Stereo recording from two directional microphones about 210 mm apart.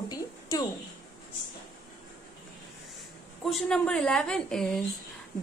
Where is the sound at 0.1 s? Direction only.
15° left (ahead or behind).